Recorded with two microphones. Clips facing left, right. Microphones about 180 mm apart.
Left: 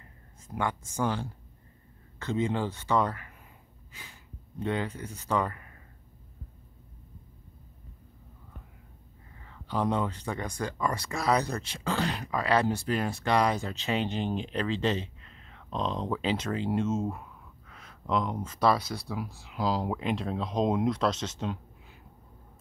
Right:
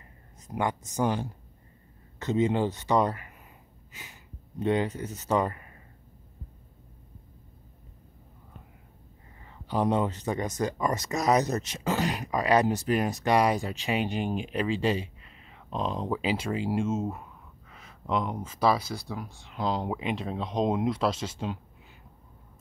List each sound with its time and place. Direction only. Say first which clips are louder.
0.5 s speech: right 2 dB; 15° right (ahead or behind)
3.9 s sniff: right 1 dB; 20° right (ahead or behind)
5.0 s speech: right 4 dB; 40° right (ahead or behind)
5.3 s speech: right 3 dB; 25° right (ahead or behind)
9.4 s speech: right 2 dB; 15° right (ahead or behind)